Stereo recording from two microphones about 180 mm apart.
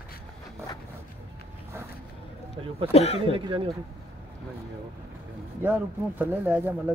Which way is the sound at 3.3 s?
30° right (ahead or behind).